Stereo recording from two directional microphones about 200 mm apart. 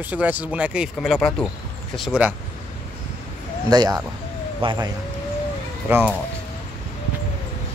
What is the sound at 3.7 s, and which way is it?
Speech, 20° right (ahead or behind).